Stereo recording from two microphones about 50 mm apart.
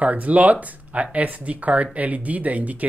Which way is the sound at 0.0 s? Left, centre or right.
Right.